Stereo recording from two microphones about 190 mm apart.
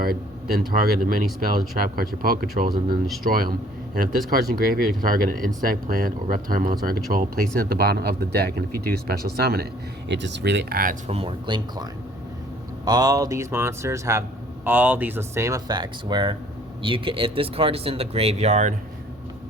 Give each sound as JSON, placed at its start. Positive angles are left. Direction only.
{"t": 0.0, "sound": "speech", "side_deg": -50}
{"t": 10.1, "sound": "speech", "side_deg": -70}
{"t": 11.1, "sound": "speech", "side_deg": -30}